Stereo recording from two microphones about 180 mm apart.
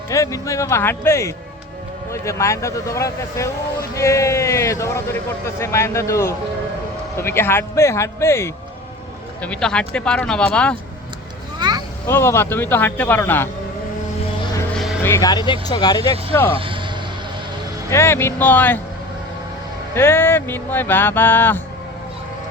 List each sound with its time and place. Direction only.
0.1 s a man's voice: 15° left (ahead or behind)
11.6 s a sound: 25° right (ahead or behind)
12.0 s a man's voice: 15° left (ahead or behind)
15.0 s speech: 15° left (ahead or behind)
16.6 s vehicle: 30° right (ahead or behind)
17.9 s a man's voice: 15° left (ahead or behind)
19.9 s a man's voice: 15° left (ahead or behind)